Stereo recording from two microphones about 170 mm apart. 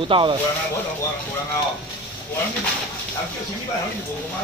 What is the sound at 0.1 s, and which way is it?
Speech, 30° right (ahead or behind).